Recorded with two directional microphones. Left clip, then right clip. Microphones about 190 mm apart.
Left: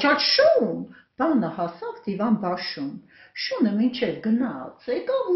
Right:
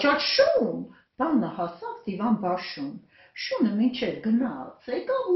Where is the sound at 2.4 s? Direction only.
50° left (ahead or behind).